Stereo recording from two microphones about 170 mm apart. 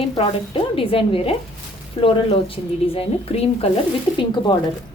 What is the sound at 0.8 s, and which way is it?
A woman's voice, 30° left (ahead or behind).